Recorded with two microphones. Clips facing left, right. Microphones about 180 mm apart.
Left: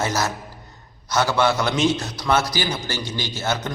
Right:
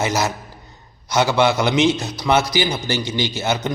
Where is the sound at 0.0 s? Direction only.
15° right (ahead or behind).